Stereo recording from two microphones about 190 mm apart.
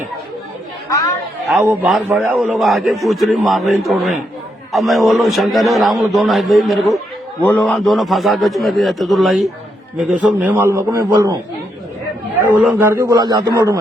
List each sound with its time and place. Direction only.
0.9 s speech: 15° left (ahead or behind)
1.6 s a man's voice: 10° right (ahead or behind)